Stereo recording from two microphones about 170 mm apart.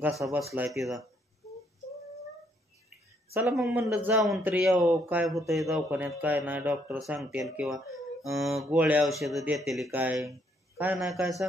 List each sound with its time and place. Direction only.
0.2 s speech: 20° right (ahead or behind)
0.6 s a man's voice: centre (ahead or behind)
3.4 s a man's voice: centre (ahead or behind)
3.7 s a man's voice: 10° right (ahead or behind)